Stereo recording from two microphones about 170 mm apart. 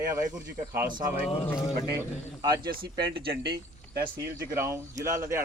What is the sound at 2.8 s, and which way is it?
Speech, 30° right (ahead or behind).